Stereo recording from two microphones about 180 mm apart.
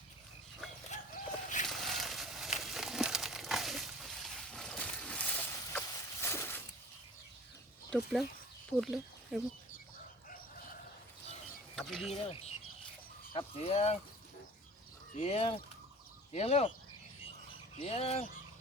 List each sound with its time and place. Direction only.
0.9 s chicken: 45° left (ahead or behind)
1.6 s a sound: centre (ahead or behind)
7.9 s speech: 5° left (ahead or behind)
11.8 s speech: centre (ahead or behind)
12.1 s speech: 35° left (ahead or behind)
15.1 s speech: 35° left (ahead or behind)
17.7 s speech: 35° left (ahead or behind)